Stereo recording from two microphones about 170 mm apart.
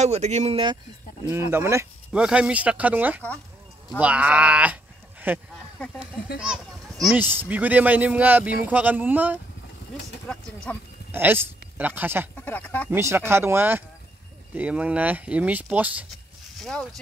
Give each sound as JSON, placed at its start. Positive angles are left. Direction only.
{"t": 0.0, "sound": "speech", "side_deg": -40}
{"t": 1.3, "sound": "speech", "side_deg": -15}
{"t": 2.1, "sound": "a child's voice", "side_deg": -5}
{"t": 7.2, "sound": "speech", "side_deg": -10}
{"t": 10.2, "sound": "speech", "side_deg": 5}
{"t": 11.1, "sound": "speech", "side_deg": -10}
{"t": 12.4, "sound": "speech", "side_deg": 10}
{"t": 12.9, "sound": "speech", "side_deg": -15}
{"t": 16.6, "sound": "speech", "side_deg": 0}